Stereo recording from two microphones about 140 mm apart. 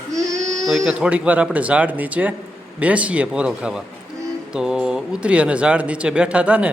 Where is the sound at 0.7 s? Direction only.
5° right (ahead or behind).